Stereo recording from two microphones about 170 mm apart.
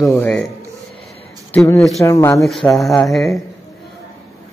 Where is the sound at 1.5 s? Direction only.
15° left (ahead or behind).